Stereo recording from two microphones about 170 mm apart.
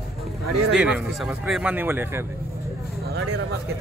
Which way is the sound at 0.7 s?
5° right (ahead or behind).